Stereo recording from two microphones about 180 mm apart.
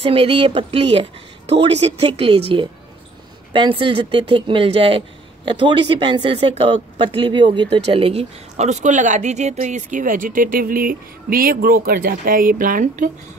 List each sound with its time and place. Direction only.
0.0 s a woman's voice: 30° right (ahead or behind); by 13.1 s 45° right (ahead or behind)